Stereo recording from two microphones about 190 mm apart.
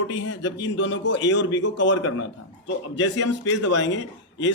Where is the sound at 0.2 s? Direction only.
75° left (ahead or behind).